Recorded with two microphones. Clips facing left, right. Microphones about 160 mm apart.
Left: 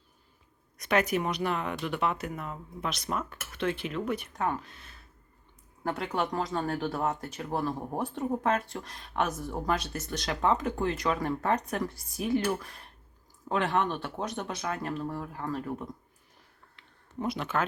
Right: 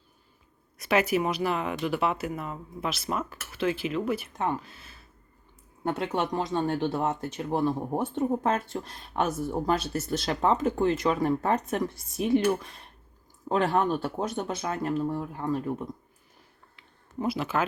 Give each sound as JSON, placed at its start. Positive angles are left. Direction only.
{"t": 0.8, "sound": "speech", "side_deg": -5}
{"t": 5.8, "sound": "speech", "side_deg": -25}
{"t": 13.5, "sound": "speech", "side_deg": -35}
{"t": 16.7, "sound": "a sound", "side_deg": -5}